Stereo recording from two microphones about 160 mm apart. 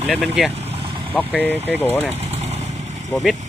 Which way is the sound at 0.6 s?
35° right (ahead or behind).